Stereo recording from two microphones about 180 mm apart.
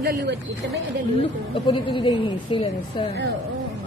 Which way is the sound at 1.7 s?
25° left (ahead or behind).